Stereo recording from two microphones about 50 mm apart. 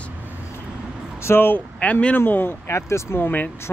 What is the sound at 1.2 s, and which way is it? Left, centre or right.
Speech, left.